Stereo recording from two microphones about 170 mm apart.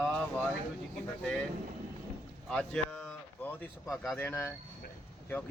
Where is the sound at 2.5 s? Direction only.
5° left (ahead or behind).